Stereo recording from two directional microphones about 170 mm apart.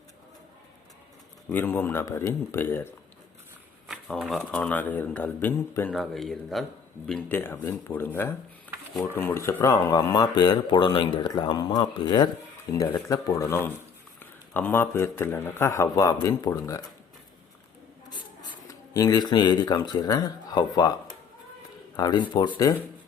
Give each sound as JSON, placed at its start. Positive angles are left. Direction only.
{"t": 1.5, "sound": "speech", "side_deg": 10}
{"t": 3.8, "sound": "speech", "side_deg": 0}
{"t": 6.0, "sound": "speech", "side_deg": 0}
{"t": 7.1, "sound": "a man's voice", "side_deg": 10}
{"t": 18.1, "sound": "speech", "side_deg": 25}